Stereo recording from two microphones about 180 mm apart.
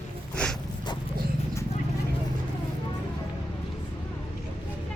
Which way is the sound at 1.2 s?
55° right (ahead or behind).